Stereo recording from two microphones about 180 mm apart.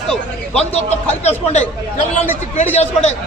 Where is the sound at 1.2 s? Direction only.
40° left (ahead or behind).